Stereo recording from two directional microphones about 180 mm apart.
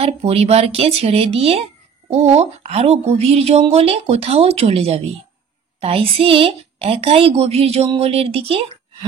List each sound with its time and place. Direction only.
0.0 s a woman's voice: 35° right (ahead or behind)